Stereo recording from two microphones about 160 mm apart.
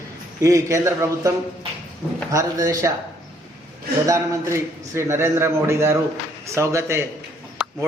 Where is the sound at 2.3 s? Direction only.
20° right (ahead or behind).